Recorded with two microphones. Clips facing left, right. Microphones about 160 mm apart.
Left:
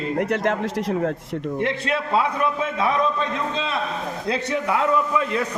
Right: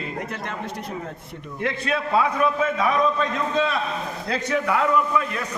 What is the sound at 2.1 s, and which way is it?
A man's voice, 25° left (ahead or behind).